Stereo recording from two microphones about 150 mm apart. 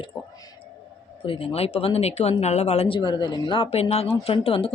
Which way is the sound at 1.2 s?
35° left (ahead or behind).